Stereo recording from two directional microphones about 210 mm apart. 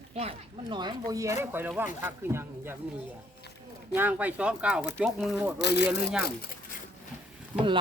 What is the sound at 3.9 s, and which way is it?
Speech, 10° right (ahead or behind).